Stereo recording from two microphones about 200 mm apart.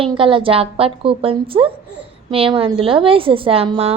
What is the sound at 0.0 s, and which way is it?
A woman's voice, 25° right (ahead or behind).